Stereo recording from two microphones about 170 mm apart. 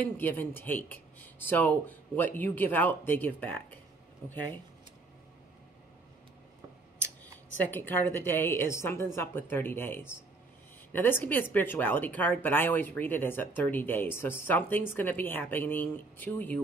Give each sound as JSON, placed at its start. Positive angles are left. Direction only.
{"t": 0.0, "sound": "speech", "side_deg": 10}
{"t": 7.7, "sound": "speech", "side_deg": 10}